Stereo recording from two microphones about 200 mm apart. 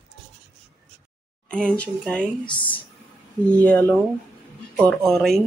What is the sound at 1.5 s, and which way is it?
Speech, 5° left (ahead or behind).